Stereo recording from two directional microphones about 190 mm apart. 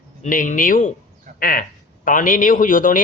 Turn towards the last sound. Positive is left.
turn(degrees=45)  # may be behind; listen again after turning